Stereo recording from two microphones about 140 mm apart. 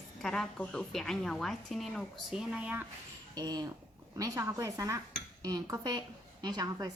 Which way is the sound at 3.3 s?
30° right (ahead or behind).